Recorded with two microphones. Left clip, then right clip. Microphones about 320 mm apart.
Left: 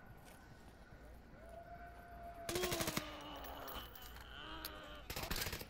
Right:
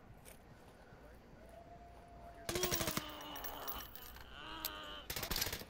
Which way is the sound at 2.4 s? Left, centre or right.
Centre.